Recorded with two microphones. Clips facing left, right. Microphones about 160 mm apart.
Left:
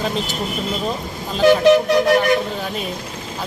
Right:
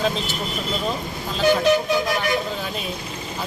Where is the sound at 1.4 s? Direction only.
75° left (ahead or behind).